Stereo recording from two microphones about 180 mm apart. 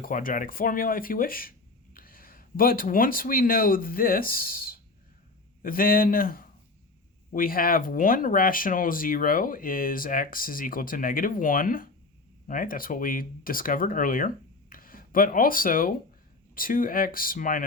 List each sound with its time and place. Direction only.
0.0 s speech: 50° left (ahead or behind)